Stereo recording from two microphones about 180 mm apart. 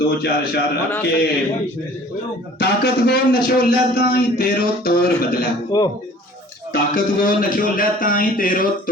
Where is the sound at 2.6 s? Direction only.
60° left (ahead or behind).